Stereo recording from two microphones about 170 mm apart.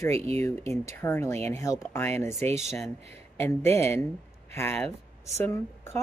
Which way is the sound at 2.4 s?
40° right (ahead or behind).